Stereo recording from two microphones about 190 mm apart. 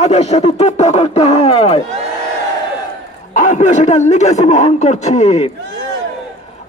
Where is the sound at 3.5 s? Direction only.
35° left (ahead or behind).